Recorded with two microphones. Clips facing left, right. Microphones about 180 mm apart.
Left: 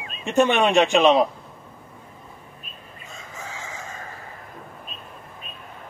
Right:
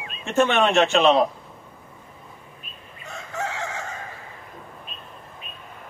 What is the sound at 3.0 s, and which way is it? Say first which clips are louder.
Chicken: right 9 dB; 70° right (ahead or behind).